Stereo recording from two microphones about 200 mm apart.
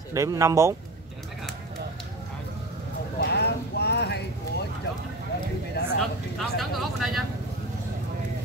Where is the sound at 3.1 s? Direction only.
55° left (ahead or behind).